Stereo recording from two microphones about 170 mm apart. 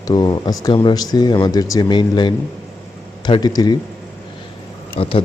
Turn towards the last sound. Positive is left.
turn(degrees=30)  # may be behind; listen again after turning